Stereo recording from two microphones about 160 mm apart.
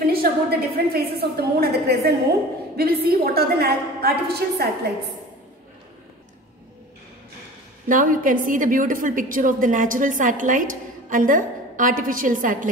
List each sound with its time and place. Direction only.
0.0 s a woman's voice: 70° right (ahead or behind)
7.9 s a woman's voice: 60° right (ahead or behind)